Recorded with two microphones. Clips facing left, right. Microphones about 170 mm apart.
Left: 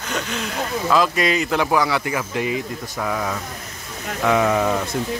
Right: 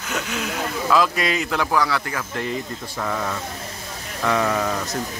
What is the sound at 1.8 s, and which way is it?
Speech, 15° left (ahead or behind).